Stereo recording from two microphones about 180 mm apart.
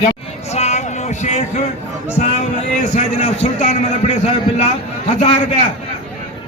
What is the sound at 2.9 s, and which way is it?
Speech, 40° left (ahead or behind).